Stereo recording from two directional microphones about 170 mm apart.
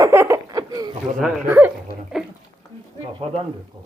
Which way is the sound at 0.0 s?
15° right (ahead or behind).